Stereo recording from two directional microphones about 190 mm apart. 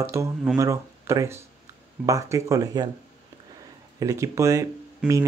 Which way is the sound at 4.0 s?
15° right (ahead or behind).